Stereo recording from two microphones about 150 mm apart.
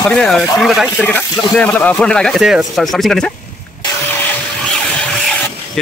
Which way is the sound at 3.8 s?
15° left (ahead or behind).